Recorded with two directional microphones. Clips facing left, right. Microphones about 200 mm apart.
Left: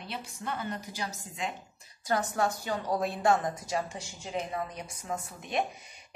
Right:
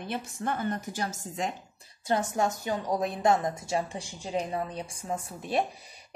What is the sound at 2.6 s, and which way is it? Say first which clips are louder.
A woman's voice: right 2 dB; 15° right (ahead or behind).